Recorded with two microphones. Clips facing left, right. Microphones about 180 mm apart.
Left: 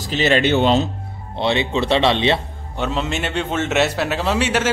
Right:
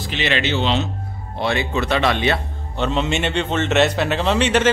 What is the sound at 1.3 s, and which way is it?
Speech, 25° left (ahead or behind).